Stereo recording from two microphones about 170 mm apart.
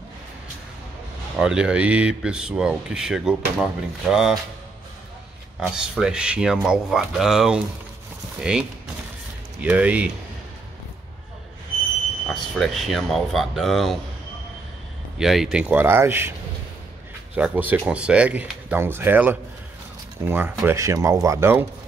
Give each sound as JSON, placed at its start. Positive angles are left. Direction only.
{"t": 1.4, "sound": "speech", "side_deg": -5}
{"t": 5.6, "sound": "speech", "side_deg": -5}
{"t": 12.3, "sound": "speech", "side_deg": 0}
{"t": 15.1, "sound": "speech", "side_deg": 0}
{"t": 17.4, "sound": "speech", "side_deg": -10}